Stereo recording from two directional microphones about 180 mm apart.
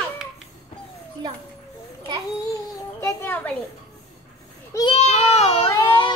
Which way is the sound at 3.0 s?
10° left (ahead or behind).